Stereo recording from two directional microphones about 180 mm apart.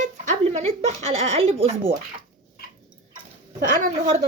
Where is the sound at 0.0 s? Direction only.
40° right (ahead or behind).